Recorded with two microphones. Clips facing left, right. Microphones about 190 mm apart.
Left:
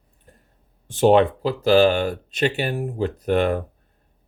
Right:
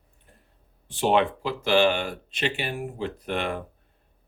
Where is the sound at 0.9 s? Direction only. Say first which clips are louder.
Left 7 dB; 45° left (ahead or behind).